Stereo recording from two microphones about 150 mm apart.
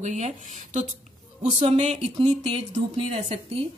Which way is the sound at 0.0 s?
50° right (ahead or behind).